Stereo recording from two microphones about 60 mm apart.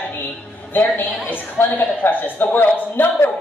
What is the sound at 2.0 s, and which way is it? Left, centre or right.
A man's voice, left.